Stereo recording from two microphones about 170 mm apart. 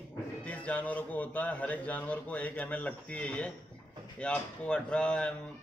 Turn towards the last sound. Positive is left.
turn(degrees=5)  # may be behind; listen again after turning